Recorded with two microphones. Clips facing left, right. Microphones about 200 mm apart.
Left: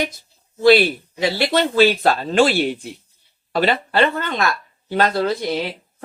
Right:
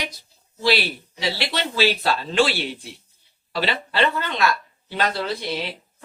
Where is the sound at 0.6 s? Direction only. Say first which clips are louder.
Left 9 dB; 50° left (ahead or behind).